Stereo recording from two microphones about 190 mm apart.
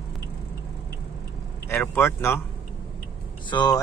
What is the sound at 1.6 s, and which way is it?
Speech, 10° left (ahead or behind).